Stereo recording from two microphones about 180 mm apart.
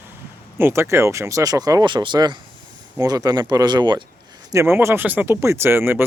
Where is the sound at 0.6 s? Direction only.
15° right (ahead or behind).